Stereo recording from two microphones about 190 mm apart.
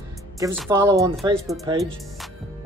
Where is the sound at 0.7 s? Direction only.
15° right (ahead or behind).